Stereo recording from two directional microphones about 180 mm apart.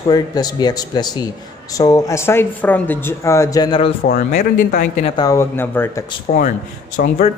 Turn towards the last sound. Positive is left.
turn(degrees=40)  # may be behind; listen again after turning